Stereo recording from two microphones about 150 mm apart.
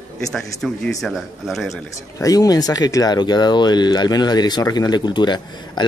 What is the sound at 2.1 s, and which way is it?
Speech, 25° left (ahead or behind).